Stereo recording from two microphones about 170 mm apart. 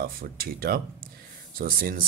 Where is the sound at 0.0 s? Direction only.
60° right (ahead or behind).